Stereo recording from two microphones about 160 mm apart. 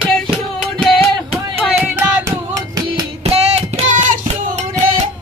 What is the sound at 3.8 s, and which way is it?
Child singing, 55° right (ahead or behind).